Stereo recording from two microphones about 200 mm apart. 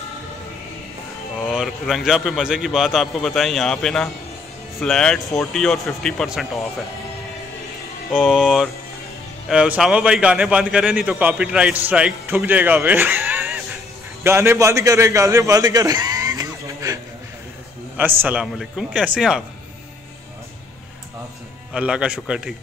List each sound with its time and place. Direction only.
1.5 s a man's voice: 5° right (ahead or behind)
8.1 s a man's voice: 5° right (ahead or behind)
21.7 s a man's voice: 5° right (ahead or behind)